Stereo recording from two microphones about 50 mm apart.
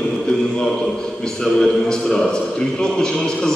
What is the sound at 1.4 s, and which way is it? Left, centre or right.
A man's voice, centre.